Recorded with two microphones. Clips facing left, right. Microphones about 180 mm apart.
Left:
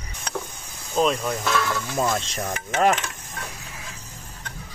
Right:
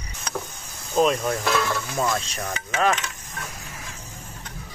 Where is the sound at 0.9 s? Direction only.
Centre (ahead or behind).